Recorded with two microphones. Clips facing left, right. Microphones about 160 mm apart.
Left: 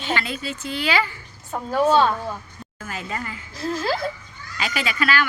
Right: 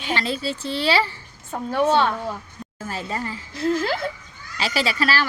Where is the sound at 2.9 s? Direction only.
35° right (ahead or behind).